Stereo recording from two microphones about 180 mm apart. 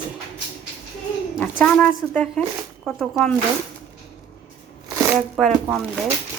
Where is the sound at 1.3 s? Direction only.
5° left (ahead or behind).